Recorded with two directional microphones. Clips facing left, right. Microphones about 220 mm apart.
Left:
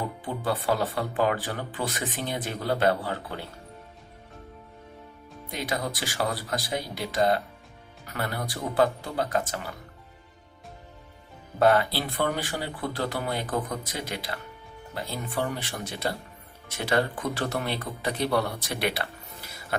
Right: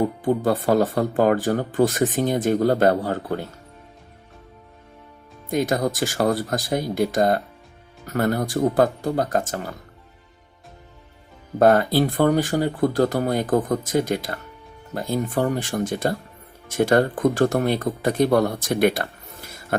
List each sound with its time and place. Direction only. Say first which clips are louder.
0.2 s speech: right 9 dB; 45° right (ahead or behind)
5.5 s speech: right 10 dB; 45° right (ahead or behind)
11.6 s speech: right 6 dB; 45° right (ahead or behind)